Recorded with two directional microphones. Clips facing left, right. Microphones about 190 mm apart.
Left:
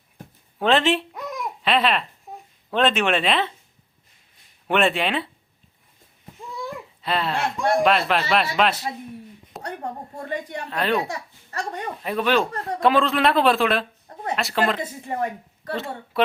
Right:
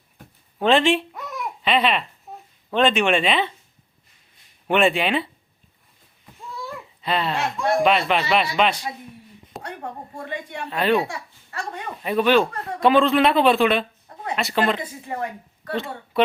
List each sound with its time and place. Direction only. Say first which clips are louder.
0.6 s babbling: right 2 dB; centre (ahead or behind)
2.6 s speech: right 2 dB; centre (ahead or behind)
4.7 s speech: right 2 dB; centre (ahead or behind)
6.6 s a child's voice: left 3 dB; centre (ahead or behind)
9.5 s a sound: left 1 dB; centre (ahead or behind)
10.2 s speech: left 4 dB; 40° left (ahead or behind)
10.7 s speech: right 3 dB; centre (ahead or behind)
12.0 s speech: right 4 dB; centre (ahead or behind)